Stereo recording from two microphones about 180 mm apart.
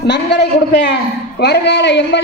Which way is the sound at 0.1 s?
70° left (ahead or behind).